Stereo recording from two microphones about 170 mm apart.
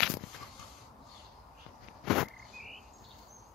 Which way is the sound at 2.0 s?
Centre (ahead or behind).